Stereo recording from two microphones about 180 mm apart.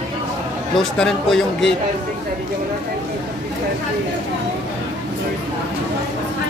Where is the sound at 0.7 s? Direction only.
Centre (ahead or behind).